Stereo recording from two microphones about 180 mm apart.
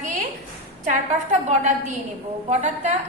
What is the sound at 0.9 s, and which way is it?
A woman's voice, 40° right (ahead or behind).